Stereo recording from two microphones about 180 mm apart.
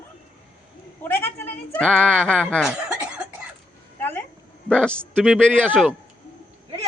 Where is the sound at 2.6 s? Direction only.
5° right (ahead or behind).